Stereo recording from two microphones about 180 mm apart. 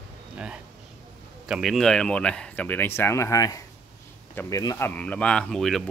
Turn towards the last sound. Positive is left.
turn(degrees=0)  # may be behind; listen again after turning